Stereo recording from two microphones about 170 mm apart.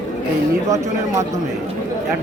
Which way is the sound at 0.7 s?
20° right (ahead or behind).